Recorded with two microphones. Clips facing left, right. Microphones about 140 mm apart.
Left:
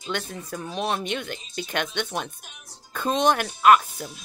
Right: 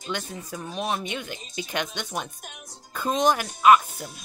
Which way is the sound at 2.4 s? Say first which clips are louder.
Right 6 dB; 45° right (ahead or behind).